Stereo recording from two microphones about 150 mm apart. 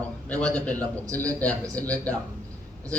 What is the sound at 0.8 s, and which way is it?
Speech, 20° right (ahead or behind).